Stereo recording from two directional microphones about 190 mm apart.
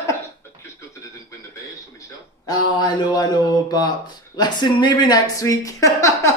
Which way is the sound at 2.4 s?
20° left (ahead or behind).